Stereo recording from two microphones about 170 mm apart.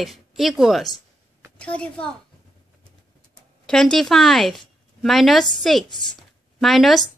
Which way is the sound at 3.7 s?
5° left (ahead or behind).